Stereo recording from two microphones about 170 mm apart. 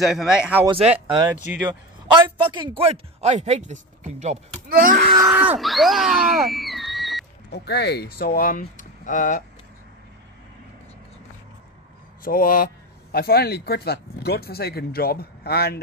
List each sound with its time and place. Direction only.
0.0 s speech: centre (ahead or behind)
0.7 s speech: 35° right (ahead or behind)
2.4 s speech: 30° right (ahead or behind)
4.6 s wail: 60° right (ahead or behind)
5.2 s speech: 10° right (ahead or behind)
7.5 s speech: 75° left (ahead or behind); by 9.4 s 50° left (ahead or behind)
12.3 s speech: 55° left (ahead or behind)